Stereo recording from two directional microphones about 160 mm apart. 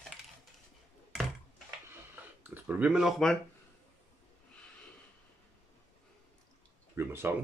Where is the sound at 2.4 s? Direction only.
10° right (ahead or behind).